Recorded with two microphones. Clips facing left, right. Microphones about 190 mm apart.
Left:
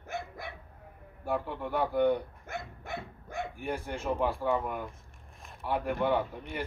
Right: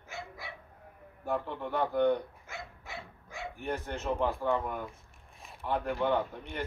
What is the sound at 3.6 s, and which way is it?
A man's voice, 10° left (ahead or behind).